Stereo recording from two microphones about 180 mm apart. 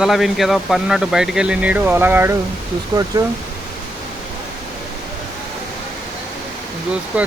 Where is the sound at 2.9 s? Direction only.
25° right (ahead or behind).